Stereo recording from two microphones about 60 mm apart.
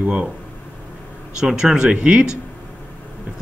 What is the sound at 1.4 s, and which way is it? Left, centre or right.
Speech, centre.